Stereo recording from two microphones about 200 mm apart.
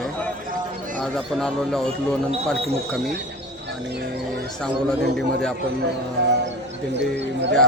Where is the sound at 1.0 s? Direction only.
5° left (ahead or behind).